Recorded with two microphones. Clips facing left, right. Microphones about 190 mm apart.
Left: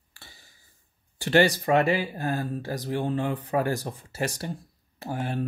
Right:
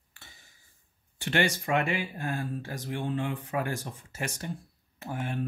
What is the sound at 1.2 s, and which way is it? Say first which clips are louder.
Speech: left 7 dB; 35° left (ahead or behind).